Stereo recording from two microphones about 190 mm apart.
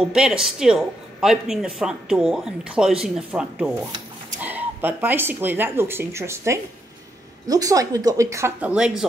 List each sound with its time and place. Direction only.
0.0 s speech: 5° right (ahead or behind)